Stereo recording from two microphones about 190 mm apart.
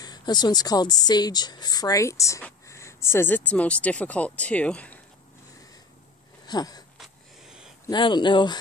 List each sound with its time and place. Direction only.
0.0 s speech: 20° left (ahead or behind)
6.4 s wheeze: 20° left (ahead or behind)
7.0 s a sound: 5° right (ahead or behind)
7.8 s speech: 25° left (ahead or behind)